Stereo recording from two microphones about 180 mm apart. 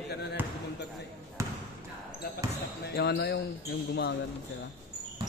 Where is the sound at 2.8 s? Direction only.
65° left (ahead or behind).